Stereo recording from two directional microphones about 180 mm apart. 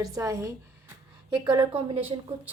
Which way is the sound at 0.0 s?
20° right (ahead or behind).